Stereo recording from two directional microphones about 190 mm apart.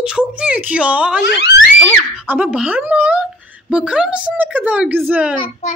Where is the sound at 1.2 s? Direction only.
65° left (ahead or behind).